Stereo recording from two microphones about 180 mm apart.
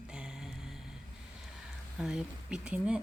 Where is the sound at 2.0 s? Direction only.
5° right (ahead or behind).